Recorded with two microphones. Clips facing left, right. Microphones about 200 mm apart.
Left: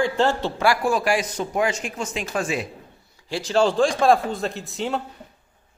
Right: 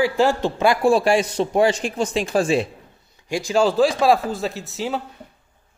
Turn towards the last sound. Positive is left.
turn(degrees=0)  # may be behind; listen again after turning